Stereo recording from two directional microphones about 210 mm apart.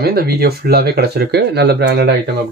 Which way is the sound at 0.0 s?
45° right (ahead or behind).